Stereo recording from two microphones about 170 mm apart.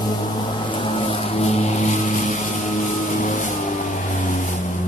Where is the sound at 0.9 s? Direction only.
35° left (ahead or behind).